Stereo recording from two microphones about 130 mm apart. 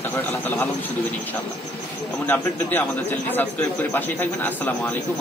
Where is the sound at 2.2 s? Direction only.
15° left (ahead or behind).